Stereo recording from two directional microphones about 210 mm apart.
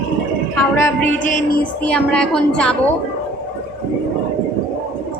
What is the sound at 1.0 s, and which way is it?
Speech, 40° left (ahead or behind).